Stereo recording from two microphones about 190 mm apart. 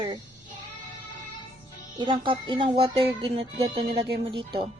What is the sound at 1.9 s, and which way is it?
Speech, 25° right (ahead or behind).